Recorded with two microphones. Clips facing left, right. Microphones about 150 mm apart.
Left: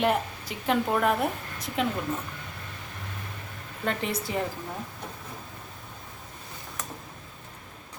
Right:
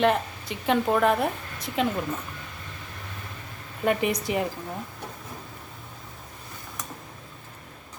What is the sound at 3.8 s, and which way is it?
Speech, 15° right (ahead or behind).